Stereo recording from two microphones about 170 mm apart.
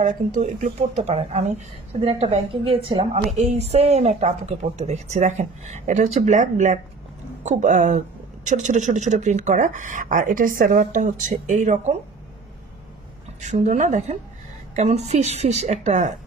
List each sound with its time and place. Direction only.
0.0 s a woman's voice: 50° right (ahead or behind)
13.4 s a woman's voice: 45° right (ahead or behind)